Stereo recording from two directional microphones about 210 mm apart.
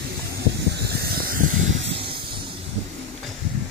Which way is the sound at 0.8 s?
45° right (ahead or behind).